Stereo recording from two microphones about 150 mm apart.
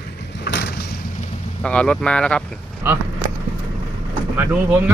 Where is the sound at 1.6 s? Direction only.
5° left (ahead or behind).